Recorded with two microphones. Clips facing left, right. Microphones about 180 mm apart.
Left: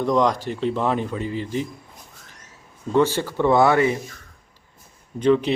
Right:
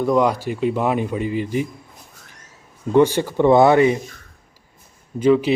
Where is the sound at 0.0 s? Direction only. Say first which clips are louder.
Right 2 dB; 10° right (ahead or behind).